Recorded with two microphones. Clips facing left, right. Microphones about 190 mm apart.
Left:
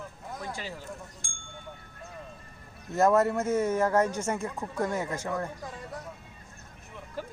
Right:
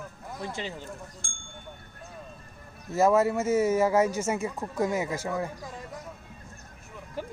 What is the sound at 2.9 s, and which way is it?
Speech, centre (ahead or behind).